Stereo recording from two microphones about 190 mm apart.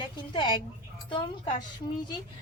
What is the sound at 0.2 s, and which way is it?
Speech, 25° left (ahead or behind).